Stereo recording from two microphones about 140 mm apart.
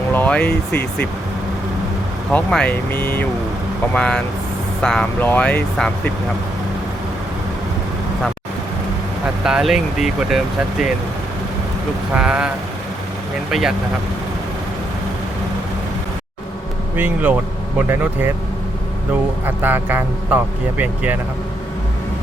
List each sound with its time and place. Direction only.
0.1 s speech: 10° left (ahead or behind)
2.3 s speech: 10° left (ahead or behind)
9.4 s speech: 5° right (ahead or behind)
12.1 s a man's voice: 10° right (ahead or behind)
13.5 s speech: centre (ahead or behind)
17.0 s a man's voice: 10° right (ahead or behind)
19.5 s a man's voice: 15° right (ahead or behind)